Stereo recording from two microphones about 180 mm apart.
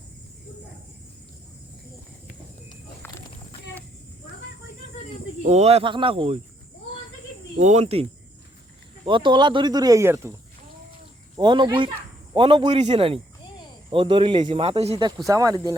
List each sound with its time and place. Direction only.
5.4 s speech: 40° right (ahead or behind)
7.5 s speech: 40° right (ahead or behind)
9.0 s speech: 25° right (ahead or behind)
11.3 s speech: 25° right (ahead or behind)
15.3 s speech: 20° right (ahead or behind)